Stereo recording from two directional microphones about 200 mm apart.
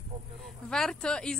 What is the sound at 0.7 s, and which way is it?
Speech, 5° left (ahead or behind).